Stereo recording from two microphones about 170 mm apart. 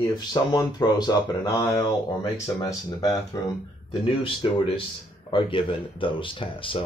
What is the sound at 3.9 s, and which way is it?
Speech, 30° left (ahead or behind).